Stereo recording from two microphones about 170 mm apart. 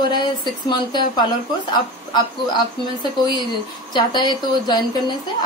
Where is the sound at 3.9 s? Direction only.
25° left (ahead or behind).